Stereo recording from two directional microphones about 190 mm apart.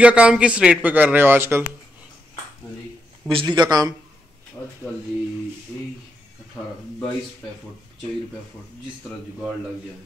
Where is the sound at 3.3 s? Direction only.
25° right (ahead or behind).